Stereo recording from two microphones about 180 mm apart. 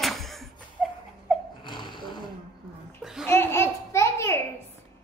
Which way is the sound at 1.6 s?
25° left (ahead or behind).